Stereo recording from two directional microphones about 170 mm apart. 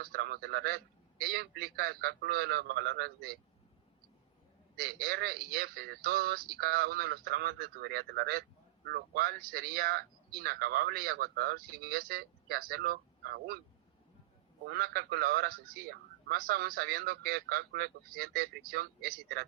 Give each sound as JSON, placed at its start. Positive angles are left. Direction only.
{"t": 0.0, "sound": "a man's voice", "side_deg": -65}
{"t": 4.8, "sound": "speech", "side_deg": -65}
{"t": 14.7, "sound": "speech", "side_deg": -70}